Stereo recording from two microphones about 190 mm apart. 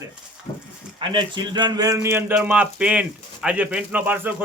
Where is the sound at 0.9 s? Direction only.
25° right (ahead or behind).